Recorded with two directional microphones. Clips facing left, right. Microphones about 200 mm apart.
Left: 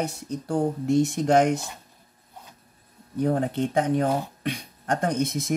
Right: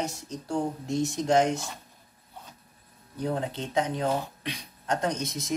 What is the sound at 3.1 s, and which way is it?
Speech, 50° left (ahead or behind).